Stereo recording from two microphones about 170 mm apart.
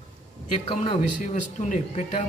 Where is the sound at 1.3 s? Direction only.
50° left (ahead or behind).